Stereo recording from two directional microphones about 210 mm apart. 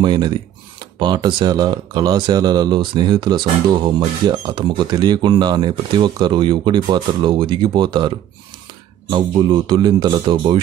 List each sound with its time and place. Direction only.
0.0 s speech: 20° right (ahead or behind)
9.1 s speech: 20° right (ahead or behind)